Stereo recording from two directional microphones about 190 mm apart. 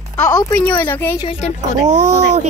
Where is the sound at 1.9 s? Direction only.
35° right (ahead or behind).